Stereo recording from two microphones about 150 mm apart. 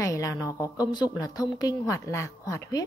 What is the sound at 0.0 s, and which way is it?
A woman's voice, 20° left (ahead or behind).